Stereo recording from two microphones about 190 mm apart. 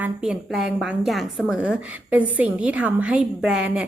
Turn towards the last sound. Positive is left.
turn(degrees=-5)  # may be behind; listen again after turning